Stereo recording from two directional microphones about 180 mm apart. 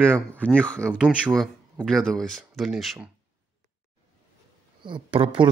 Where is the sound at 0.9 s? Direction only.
5° right (ahead or behind).